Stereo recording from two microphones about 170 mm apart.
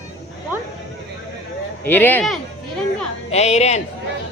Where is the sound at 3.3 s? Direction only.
40° left (ahead or behind).